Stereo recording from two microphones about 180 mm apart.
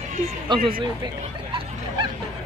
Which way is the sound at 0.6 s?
30° right (ahead or behind).